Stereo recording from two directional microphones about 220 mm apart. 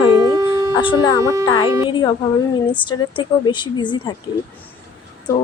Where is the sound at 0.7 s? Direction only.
20° left (ahead or behind).